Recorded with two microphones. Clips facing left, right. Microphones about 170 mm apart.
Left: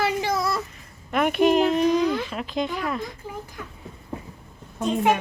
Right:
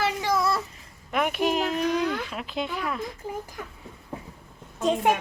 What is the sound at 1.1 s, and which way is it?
A woman's voice, 5° right (ahead or behind).